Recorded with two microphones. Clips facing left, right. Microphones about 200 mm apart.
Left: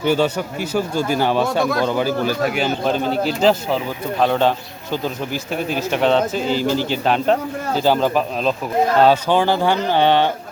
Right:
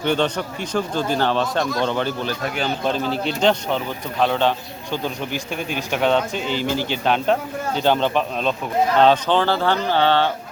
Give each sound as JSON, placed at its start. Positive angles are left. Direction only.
{"t": 0.0, "sound": "speech", "side_deg": 5}
{"t": 5.3, "sound": "speech", "side_deg": 40}
{"t": 5.9, "sound": "speech", "side_deg": 0}
{"t": 6.4, "sound": "speech", "side_deg": 40}
{"t": 7.0, "sound": "speech", "side_deg": 0}